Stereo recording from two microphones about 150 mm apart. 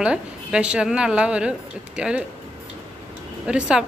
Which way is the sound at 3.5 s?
5° right (ahead or behind).